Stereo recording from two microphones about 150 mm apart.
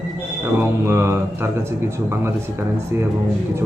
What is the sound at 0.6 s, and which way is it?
Speech, 15° right (ahead or behind).